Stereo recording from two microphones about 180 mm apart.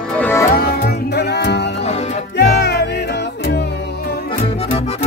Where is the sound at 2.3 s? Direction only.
70° left (ahead or behind).